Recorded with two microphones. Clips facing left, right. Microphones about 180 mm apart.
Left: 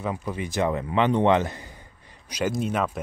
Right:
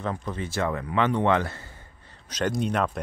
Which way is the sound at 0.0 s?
10° left (ahead or behind).